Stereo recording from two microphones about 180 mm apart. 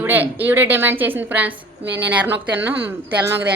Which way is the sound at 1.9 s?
70° right (ahead or behind).